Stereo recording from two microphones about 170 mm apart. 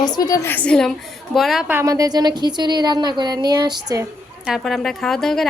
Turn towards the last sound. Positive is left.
turn(degrees=0)  # may be behind; listen again after turning